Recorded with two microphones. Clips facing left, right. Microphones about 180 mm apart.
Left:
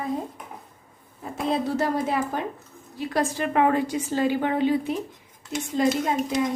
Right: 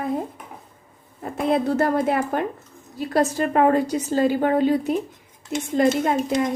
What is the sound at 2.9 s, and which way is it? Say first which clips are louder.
A woman's voice: right 4 dB; 40° right (ahead or behind).